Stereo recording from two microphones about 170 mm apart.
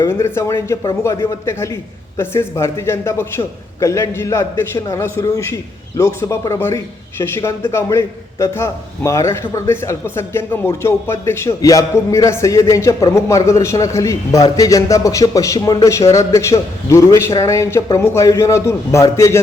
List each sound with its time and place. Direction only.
0.0 s a man's voice: 15° left (ahead or behind)